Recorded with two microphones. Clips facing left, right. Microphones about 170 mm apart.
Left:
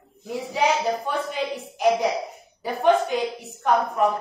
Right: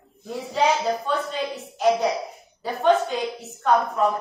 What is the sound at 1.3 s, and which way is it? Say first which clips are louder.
A woman's voice: left 1 dB; 15° left (ahead or behind).